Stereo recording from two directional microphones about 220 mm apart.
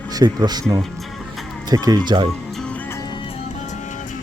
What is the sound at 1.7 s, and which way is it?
Speech, 15° right (ahead or behind).